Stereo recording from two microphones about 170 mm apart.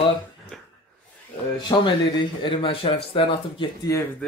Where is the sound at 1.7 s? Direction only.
30° left (ahead or behind).